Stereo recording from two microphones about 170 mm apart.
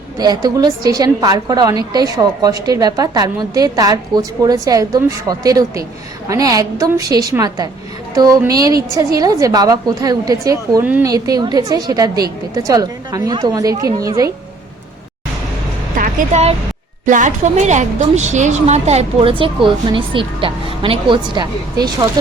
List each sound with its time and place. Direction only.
0.2 s a woman's voice: 25° right (ahead or behind)
16.0 s a sound: 45° right (ahead or behind)
17.1 s a woman's voice: 45° right (ahead or behind); by 21.9 s 25° right (ahead or behind)